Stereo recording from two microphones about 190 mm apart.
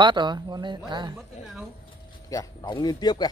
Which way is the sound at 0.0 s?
25° right (ahead or behind).